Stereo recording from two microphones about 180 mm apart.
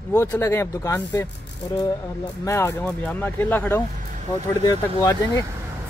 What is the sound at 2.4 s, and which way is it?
Speech, 15° left (ahead or behind).